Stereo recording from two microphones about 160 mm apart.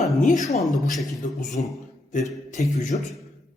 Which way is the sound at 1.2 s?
50° left (ahead or behind).